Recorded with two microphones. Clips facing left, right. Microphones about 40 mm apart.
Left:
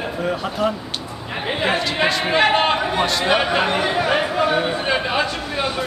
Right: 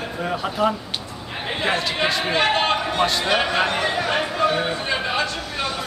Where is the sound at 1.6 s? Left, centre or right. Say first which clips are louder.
Left 2 dB; centre.